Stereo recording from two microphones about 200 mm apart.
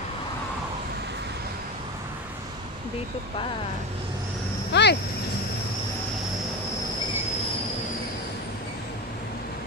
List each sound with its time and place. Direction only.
4.7 s speech: 55° left (ahead or behind)